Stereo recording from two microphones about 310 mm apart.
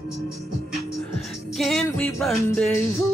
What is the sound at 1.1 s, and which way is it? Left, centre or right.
Music, centre.